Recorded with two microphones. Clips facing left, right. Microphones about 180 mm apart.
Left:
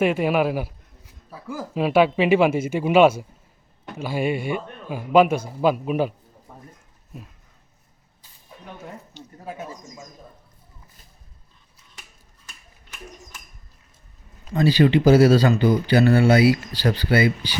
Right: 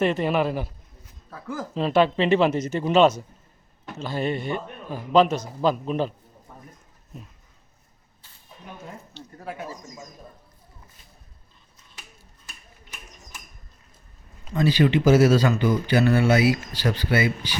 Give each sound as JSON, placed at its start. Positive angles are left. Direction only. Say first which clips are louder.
{"t": 0.0, "sound": "a man's voice", "louder": "left 2 dB", "side_deg": 10}
{"t": 6.5, "sound": "a sound", "louder": "left 2 dB", "side_deg": 5}
{"t": 9.1, "sound": "speech", "louder": "right 1 dB", "side_deg": 20}
{"t": 14.5, "sound": "speech", "louder": "left 3 dB", "side_deg": 35}